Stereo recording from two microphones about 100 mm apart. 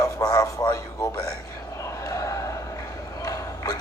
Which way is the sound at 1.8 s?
30° left (ahead or behind).